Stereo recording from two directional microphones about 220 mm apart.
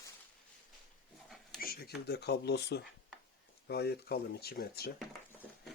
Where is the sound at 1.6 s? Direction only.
45° left (ahead or behind).